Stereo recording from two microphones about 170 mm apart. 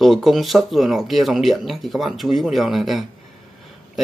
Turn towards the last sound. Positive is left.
turn(degrees=0)  # may be behind; listen again after turning